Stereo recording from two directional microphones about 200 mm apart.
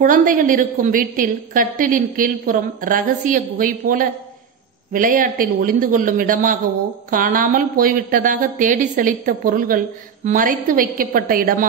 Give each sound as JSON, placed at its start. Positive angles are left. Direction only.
{"t": 0.0, "sound": "a woman's voice", "side_deg": -45}